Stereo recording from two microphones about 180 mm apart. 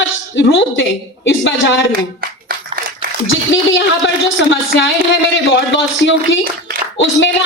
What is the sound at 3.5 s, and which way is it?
A man's voice, 90° left.